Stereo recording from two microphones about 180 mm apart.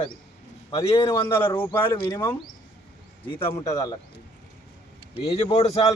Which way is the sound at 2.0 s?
25° left (ahead or behind).